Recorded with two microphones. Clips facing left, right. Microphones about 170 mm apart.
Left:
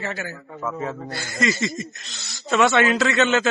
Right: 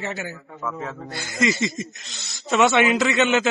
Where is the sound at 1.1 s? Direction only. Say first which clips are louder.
Right 3 dB; 20° right (ahead or behind).